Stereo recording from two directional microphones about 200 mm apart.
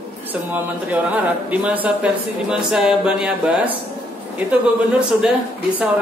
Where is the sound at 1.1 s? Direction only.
5° right (ahead or behind).